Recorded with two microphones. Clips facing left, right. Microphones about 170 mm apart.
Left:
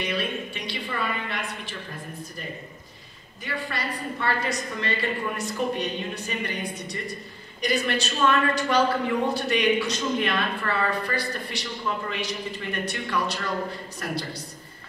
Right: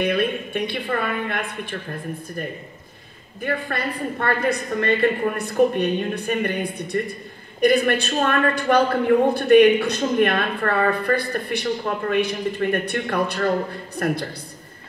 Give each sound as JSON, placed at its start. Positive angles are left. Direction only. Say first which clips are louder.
{"t": 0.0, "sound": "a woman's voice", "louder": "right 7 dB", "side_deg": -55}
{"t": 3.3, "sound": "a woman's voice", "louder": "right 7 dB", "side_deg": -55}